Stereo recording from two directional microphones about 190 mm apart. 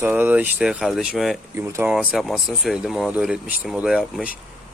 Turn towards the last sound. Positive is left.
turn(degrees=-5)  # may be behind; listen again after turning